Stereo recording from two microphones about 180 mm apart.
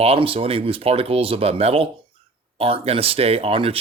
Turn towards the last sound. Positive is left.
turn(degrees=-30)  # may be behind; listen again after turning